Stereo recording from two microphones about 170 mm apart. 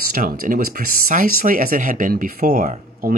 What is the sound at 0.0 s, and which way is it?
Speech, 60° right (ahead or behind).